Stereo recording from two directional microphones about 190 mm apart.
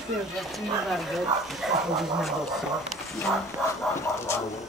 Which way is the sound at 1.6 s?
Centre (ahead or behind).